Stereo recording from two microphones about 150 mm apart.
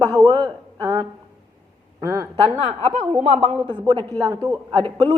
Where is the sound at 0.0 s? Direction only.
25° right (ahead or behind).